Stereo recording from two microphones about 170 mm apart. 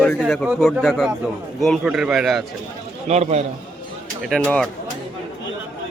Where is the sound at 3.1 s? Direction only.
40° right (ahead or behind).